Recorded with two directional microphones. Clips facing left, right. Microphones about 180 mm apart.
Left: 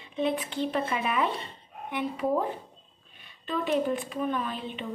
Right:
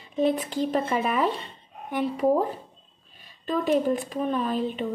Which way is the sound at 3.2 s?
40° right (ahead or behind).